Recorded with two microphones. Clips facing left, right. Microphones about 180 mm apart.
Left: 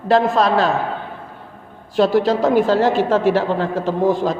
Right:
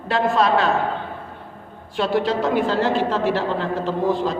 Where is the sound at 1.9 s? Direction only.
40° left (ahead or behind).